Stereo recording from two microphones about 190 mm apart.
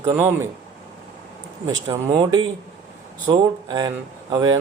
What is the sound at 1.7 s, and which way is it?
Speech, 20° right (ahead or behind).